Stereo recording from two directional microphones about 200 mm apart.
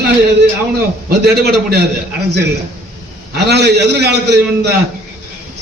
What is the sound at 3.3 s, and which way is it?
A man's voice, 55° right (ahead or behind).